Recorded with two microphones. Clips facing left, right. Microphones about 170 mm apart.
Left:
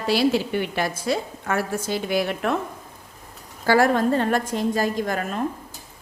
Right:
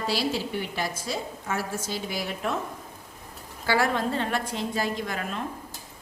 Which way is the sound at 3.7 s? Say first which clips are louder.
Left 7 dB; 45° left (ahead or behind).